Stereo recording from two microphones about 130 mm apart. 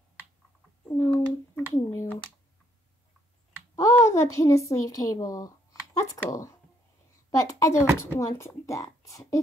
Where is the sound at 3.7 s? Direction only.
20° left (ahead or behind).